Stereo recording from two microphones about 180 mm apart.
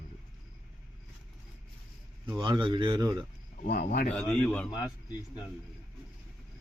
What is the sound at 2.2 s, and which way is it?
Speech, 25° right (ahead or behind).